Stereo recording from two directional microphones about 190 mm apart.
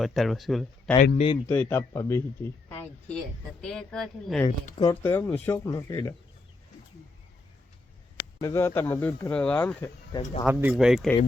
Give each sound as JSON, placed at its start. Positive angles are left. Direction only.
{"t": 0.0, "sound": "speech", "side_deg": 0}
{"t": 0.9, "sound": "speech", "side_deg": 40}
{"t": 1.5, "sound": "speech", "side_deg": 10}
{"t": 4.8, "sound": "speech", "side_deg": 15}
{"t": 8.4, "sound": "speech", "side_deg": 15}
{"t": 10.1, "sound": "speech", "side_deg": 25}
{"t": 10.4, "sound": "speech", "side_deg": -10}